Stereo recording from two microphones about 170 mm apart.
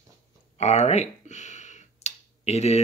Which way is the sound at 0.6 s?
40° left (ahead or behind).